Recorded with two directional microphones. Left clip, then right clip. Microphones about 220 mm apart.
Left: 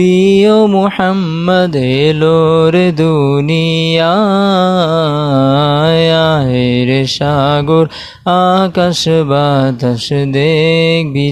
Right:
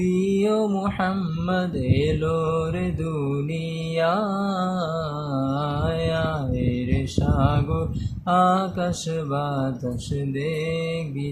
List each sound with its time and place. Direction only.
0.0 s mantra: 40° left (ahead or behind)